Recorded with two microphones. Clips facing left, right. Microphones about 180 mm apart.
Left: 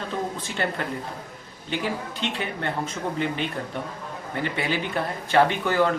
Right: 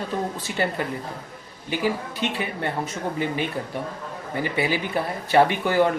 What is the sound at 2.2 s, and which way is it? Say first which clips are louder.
Speech: right 3 dB; 10° right (ahead or behind).